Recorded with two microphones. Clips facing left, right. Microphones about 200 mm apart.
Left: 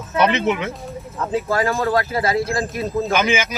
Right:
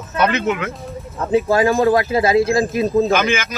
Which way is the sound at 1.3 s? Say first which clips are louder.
Right 6 dB; 20° right (ahead or behind).